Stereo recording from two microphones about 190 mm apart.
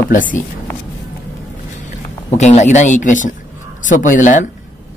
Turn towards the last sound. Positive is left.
turn(degrees=40)  # may be behind; listen again after turning